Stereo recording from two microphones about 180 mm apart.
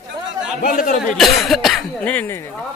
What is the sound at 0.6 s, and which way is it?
Speech, 50° left (ahead or behind).